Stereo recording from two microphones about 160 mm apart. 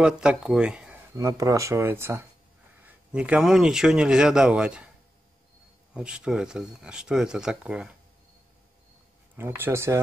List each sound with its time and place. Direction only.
0.0 s speech: 5° right (ahead or behind)
1.1 s speech: 20° right (ahead or behind)
5.9 s speech: 5° right (ahead or behind)
9.4 s speech: 15° right (ahead or behind)